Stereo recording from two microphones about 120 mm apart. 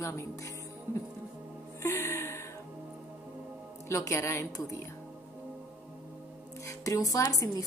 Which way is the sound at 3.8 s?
25° left (ahead or behind).